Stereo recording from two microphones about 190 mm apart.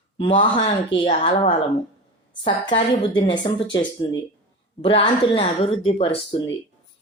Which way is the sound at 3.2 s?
25° left (ahead or behind).